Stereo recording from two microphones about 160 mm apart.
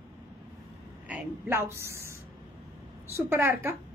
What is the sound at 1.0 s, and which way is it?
A woman's voice, 10° right (ahead or behind).